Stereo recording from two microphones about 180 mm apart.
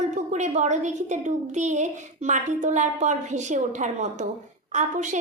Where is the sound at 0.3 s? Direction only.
40° right (ahead or behind).